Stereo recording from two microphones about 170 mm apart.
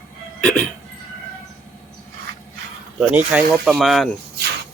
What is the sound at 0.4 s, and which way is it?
Hiccup, 10° left (ahead or behind).